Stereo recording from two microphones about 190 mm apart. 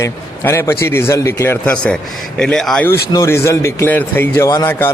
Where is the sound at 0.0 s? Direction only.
15° left (ahead or behind).